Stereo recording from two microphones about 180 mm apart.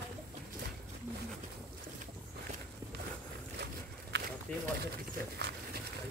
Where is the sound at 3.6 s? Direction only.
70° right (ahead or behind).